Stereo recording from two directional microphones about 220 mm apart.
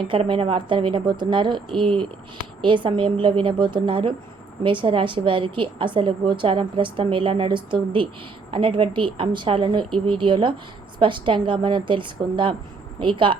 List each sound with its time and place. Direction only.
0.1 s a woman's voice: 25° right (ahead or behind)